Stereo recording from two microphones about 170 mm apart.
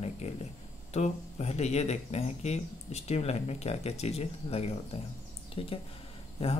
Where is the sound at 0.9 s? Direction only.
40° left (ahead or behind).